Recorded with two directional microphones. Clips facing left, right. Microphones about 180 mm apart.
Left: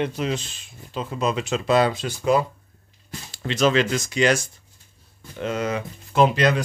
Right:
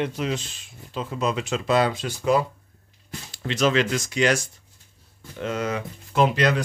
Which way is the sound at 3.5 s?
30° left (ahead or behind).